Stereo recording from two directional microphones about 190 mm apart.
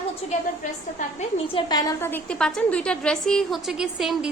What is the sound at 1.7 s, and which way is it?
A woman's voice, 20° left (ahead or behind).